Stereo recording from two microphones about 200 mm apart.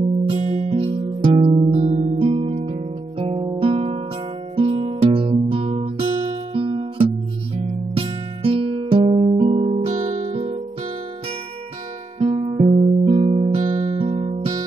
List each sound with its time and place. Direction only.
0.3 s music: 30° right (ahead or behind)
12.2 s music: 30° right (ahead or behind)